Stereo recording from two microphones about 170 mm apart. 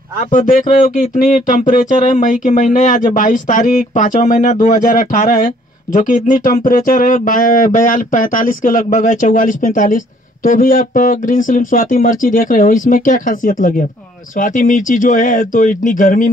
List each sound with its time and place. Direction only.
0.3 s speech: 50° left (ahead or behind)